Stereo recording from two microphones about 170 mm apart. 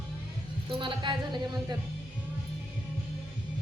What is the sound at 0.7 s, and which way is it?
Child singing, 30° right (ahead or behind).